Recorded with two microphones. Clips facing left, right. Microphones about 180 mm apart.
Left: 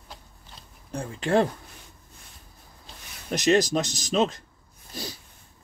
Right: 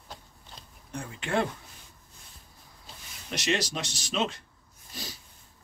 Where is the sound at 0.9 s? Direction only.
35° left (ahead or behind).